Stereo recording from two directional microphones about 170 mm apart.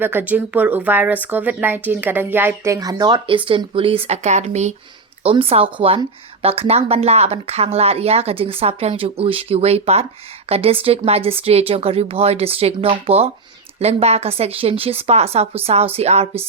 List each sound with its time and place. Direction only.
0.0 s speech: 10° right (ahead or behind); by 16.3 s 40° right (ahead or behind)